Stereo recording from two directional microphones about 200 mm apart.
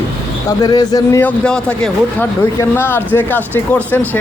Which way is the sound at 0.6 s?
20° left (ahead or behind).